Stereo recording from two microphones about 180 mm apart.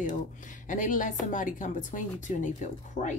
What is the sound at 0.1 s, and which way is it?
Speech, 45° left (ahead or behind).